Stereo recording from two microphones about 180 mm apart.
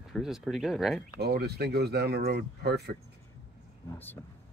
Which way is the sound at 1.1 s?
60° right (ahead or behind).